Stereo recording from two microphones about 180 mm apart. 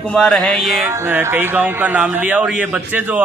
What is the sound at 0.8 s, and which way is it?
A man's voice, 15° right (ahead or behind).